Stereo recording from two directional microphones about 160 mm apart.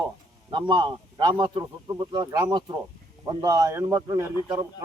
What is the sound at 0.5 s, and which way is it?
Speech, 30° right (ahead or behind).